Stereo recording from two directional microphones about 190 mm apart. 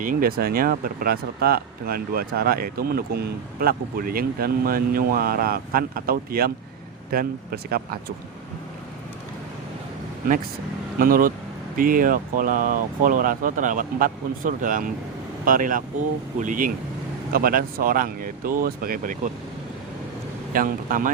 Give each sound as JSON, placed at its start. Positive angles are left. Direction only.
{"t": 0.0, "sound": "speech", "side_deg": -50}
{"t": 11.0, "sound": "speech", "side_deg": -45}
{"t": 20.5, "sound": "speech", "side_deg": -50}